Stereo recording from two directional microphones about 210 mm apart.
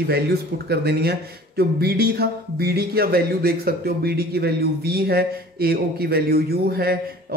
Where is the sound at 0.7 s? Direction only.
50° right (ahead or behind).